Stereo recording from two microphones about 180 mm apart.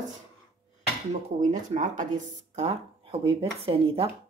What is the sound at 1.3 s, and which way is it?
Speech, 45° right (ahead or behind).